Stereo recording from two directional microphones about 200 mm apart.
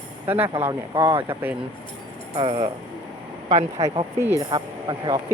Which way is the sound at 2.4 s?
25° right (ahead or behind).